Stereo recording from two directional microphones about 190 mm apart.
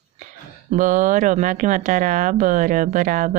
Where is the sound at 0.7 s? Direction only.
40° right (ahead or behind).